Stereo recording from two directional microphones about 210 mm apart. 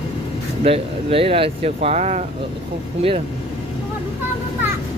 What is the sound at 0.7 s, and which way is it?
Speech, 25° right (ahead or behind).